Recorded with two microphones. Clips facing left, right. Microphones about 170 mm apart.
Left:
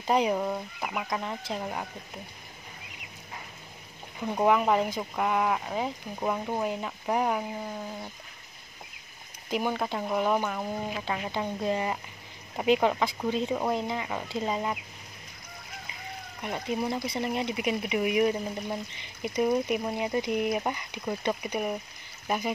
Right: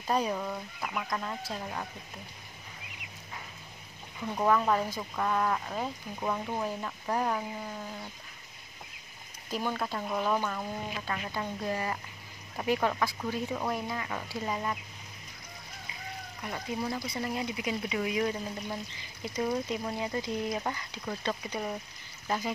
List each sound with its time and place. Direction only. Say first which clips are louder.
0.0 s speech: left 5 dB; 20° left (ahead or behind)
4.3 s speech: left 3 dB; 20° left (ahead or behind)
9.5 s speech: left 4 dB; 15° left (ahead or behind)
16.4 s speech: left 4 dB; 20° left (ahead or behind)